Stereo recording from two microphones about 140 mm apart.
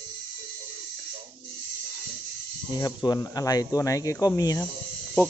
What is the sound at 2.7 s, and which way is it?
Speech, 30° left (ahead or behind).